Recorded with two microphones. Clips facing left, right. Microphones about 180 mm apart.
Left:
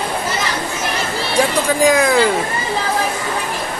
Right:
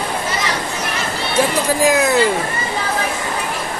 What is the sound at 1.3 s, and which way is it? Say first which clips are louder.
Music: left 1 dB; 5° right (ahead or behind).